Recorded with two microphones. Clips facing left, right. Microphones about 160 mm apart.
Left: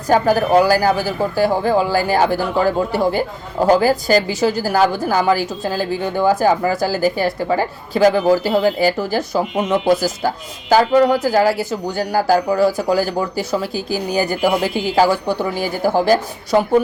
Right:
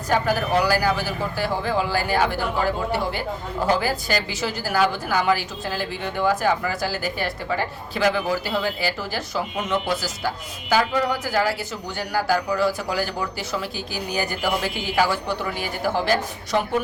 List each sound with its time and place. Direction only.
0.1 s a woman's voice: 40° left (ahead or behind)